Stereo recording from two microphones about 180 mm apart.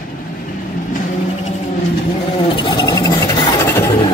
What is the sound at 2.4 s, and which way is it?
Vehicle, 25° left (ahead or behind).